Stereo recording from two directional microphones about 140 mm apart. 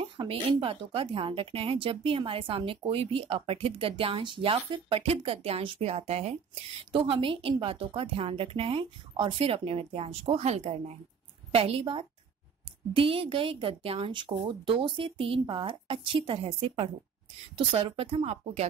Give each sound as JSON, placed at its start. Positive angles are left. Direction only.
{"t": 0.0, "sound": "a woman's voice", "side_deg": -40}